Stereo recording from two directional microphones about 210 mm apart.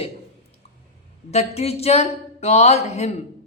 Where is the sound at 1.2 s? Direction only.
30° left (ahead or behind).